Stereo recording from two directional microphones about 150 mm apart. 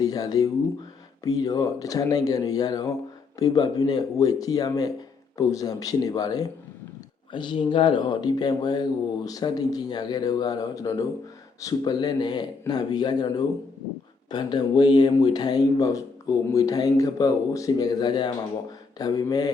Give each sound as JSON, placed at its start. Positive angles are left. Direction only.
{"t": 0.0, "sound": "speech", "side_deg": 25}